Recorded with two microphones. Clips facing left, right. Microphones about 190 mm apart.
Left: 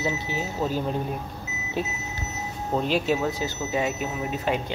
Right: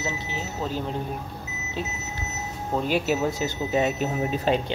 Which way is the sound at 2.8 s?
5° right (ahead or behind).